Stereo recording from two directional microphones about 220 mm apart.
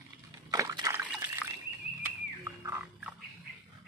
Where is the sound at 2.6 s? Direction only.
10° right (ahead or behind).